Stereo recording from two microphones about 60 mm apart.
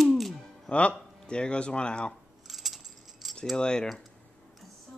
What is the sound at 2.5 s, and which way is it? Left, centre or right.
Keys jangling, centre.